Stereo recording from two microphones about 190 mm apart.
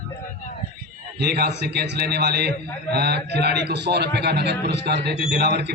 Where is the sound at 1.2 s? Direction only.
60° right (ahead or behind).